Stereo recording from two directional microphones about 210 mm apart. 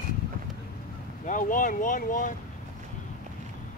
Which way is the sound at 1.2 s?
40° left (ahead or behind).